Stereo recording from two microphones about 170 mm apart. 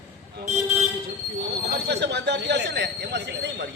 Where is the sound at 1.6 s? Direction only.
80° right.